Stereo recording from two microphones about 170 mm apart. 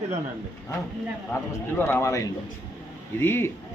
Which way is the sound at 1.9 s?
15° left (ahead or behind).